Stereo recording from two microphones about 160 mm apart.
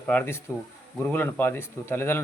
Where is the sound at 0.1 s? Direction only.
10° left (ahead or behind).